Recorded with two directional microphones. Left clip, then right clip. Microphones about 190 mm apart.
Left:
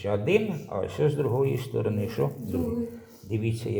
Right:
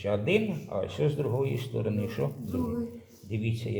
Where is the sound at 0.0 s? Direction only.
25° left (ahead or behind).